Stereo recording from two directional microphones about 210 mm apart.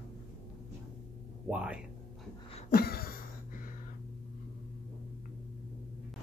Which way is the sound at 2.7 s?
45° left (ahead or behind).